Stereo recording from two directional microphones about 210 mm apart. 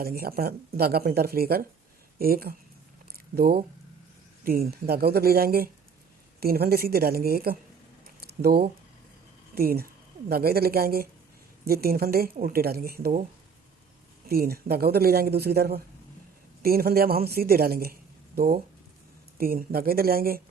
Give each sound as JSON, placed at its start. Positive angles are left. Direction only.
{"t": 0.0, "sound": "speech", "side_deg": -45}
{"t": 3.1, "sound": "a sound", "side_deg": -45}
{"t": 4.4, "sound": "speech", "side_deg": -45}
{"t": 8.0, "sound": "a sound", "side_deg": -50}
{"t": 9.6, "sound": "a woman's voice", "side_deg": -45}
{"t": 14.3, "sound": "speech", "side_deg": -45}